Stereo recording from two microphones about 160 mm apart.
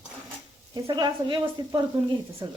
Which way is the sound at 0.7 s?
30° right (ahead or behind).